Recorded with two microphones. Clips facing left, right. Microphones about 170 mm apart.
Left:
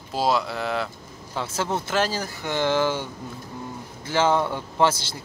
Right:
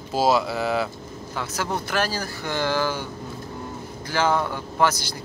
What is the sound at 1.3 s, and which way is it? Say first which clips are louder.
Speech: left 1 dB; 25° left (ahead or behind).